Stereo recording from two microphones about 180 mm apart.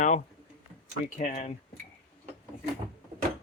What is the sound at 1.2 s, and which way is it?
Speech, 35° left (ahead or behind).